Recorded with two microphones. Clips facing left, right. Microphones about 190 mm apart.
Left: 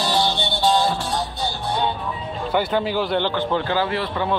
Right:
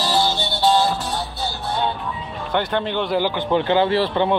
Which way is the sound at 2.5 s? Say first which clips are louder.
Left 1 dB; 5° left (ahead or behind).